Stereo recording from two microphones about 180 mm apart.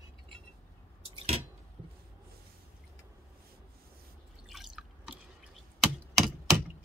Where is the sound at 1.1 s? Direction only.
35° right (ahead or behind).